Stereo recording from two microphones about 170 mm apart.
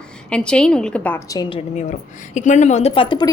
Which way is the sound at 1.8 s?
45° left (ahead or behind).